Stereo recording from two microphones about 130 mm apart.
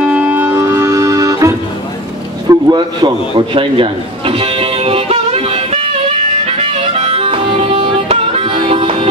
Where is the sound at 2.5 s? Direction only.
30° right (ahead or behind).